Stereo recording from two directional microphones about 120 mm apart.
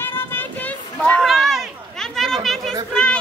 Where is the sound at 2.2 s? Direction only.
Centre (ahead or behind).